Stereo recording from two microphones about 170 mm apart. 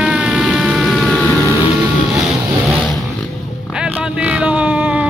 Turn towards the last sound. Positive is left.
turn(degrees=-5)  # may be behind; listen again after turning